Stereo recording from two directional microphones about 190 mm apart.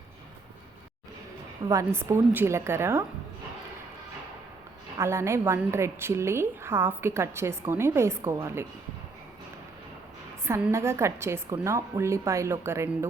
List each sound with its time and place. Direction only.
1.6 s a woman's voice: 15° right (ahead or behind)
4.9 s a woman's voice: 15° right (ahead or behind)
10.4 s a woman's voice: 15° right (ahead or behind)